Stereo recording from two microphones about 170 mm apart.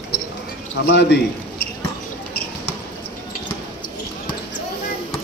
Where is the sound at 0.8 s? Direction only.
80° left.